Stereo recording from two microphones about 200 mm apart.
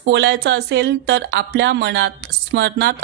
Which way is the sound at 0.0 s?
65° right (ahead or behind).